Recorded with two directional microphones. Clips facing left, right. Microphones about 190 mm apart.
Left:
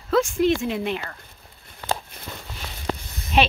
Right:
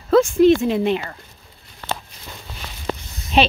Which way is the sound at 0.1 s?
30° right (ahead or behind).